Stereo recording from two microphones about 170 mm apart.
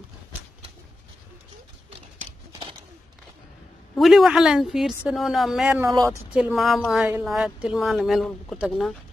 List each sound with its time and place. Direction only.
3.9 s a woman's voice: centre (ahead or behind)
5.8 s speech: 20° right (ahead or behind)
6.3 s a woman's voice: 5° right (ahead or behind)